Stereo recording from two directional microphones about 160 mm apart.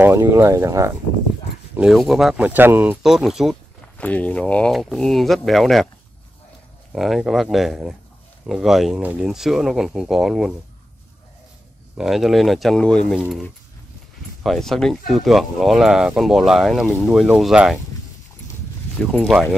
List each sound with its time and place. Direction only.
0.0 s speech: 15° right (ahead or behind)
1.8 s speech: centre (ahead or behind)
4.0 s speech: 10° left (ahead or behind)
6.9 s speech: centre (ahead or behind)
12.0 s speech: centre (ahead or behind)
19.1 s speech: centre (ahead or behind)